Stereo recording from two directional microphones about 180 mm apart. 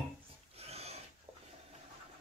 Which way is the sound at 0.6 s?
35° right (ahead or behind).